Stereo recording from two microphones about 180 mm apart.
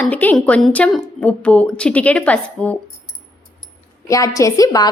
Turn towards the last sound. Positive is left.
turn(degrees=20)  # may be behind; listen again after turning